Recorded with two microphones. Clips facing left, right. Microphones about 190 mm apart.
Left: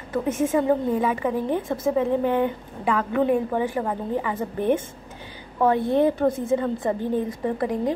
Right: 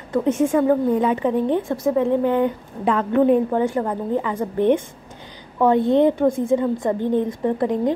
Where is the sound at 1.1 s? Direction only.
20° right (ahead or behind).